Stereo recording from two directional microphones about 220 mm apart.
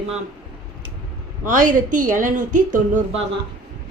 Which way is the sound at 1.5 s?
35° right (ahead or behind).